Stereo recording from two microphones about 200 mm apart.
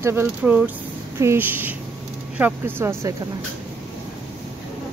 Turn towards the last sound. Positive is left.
turn(degrees=-10)  # may be behind; listen again after turning